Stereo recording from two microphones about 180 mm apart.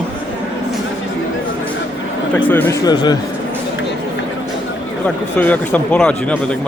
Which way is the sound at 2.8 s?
20° left (ahead or behind).